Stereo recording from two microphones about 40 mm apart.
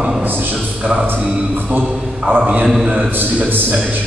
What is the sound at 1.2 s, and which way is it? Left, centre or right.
A man's voice, right.